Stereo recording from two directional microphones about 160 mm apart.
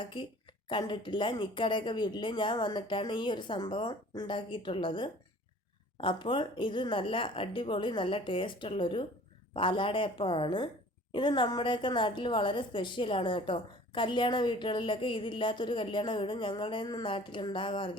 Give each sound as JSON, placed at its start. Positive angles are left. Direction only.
{"t": 0.0, "sound": "a woman's voice", "side_deg": 30}